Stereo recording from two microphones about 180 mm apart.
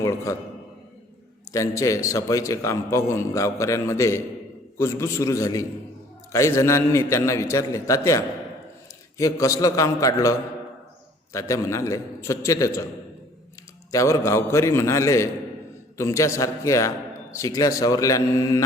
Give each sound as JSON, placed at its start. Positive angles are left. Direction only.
{"t": 0.0, "sound": "a man's voice", "side_deg": 15}
{"t": 1.5, "sound": "a man's voice", "side_deg": 15}
{"t": 13.9, "sound": "a man's voice", "side_deg": 15}